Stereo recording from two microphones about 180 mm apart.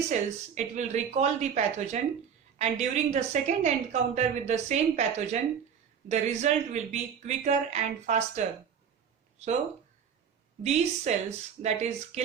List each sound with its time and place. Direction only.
0.1 s a woman's voice: 40° right (ahead or behind)
10.6 s a woman's voice: 40° right (ahead or behind)